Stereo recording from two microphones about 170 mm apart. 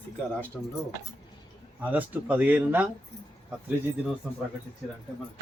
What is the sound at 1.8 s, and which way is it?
Speech, 10° right (ahead or behind).